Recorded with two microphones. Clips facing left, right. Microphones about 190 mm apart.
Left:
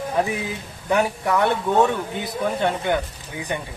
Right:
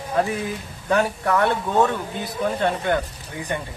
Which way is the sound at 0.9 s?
15° left (ahead or behind).